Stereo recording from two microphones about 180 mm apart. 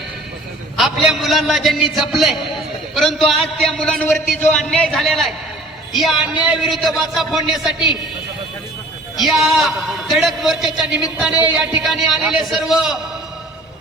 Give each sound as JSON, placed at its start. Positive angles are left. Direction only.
{"t": 0.8, "sound": "a man's voice", "side_deg": 0}
{"t": 9.2, "sound": "a man's voice", "side_deg": 0}